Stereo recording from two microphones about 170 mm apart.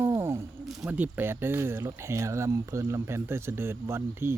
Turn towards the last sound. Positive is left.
turn(degrees=-15)  # may be behind; listen again after turning